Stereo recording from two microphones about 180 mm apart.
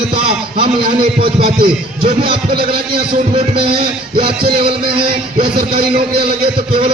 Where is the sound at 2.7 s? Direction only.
30° right (ahead or behind).